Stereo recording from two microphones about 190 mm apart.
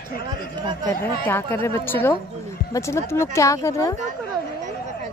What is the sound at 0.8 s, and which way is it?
Speech, 10° left (ahead or behind).